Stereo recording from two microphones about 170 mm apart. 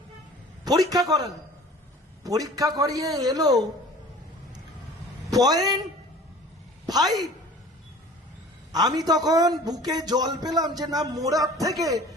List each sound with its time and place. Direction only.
0.6 s a man's voice: 25° right (ahead or behind)
5.3 s a man's voice: 20° right (ahead or behind)
6.8 s a sound: 20° right (ahead or behind)
8.7 s a man's voice: 25° right (ahead or behind)